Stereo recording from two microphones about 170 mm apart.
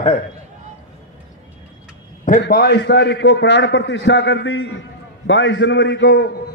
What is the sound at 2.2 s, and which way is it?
A man's voice, 55° left (ahead or behind).